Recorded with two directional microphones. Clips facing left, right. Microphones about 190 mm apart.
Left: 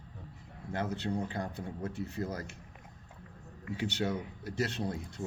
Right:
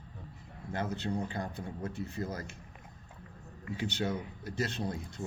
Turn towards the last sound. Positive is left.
turn(degrees=70)  # may be behind; listen again after turning